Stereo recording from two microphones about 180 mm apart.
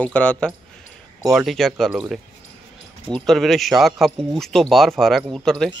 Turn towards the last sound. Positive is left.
turn(degrees=5)  # may be behind; listen again after turning